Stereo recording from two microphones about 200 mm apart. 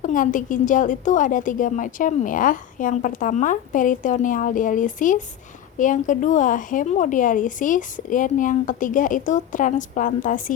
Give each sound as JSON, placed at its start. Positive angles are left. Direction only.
{"t": 0.0, "sound": "a woman's voice", "side_deg": 40}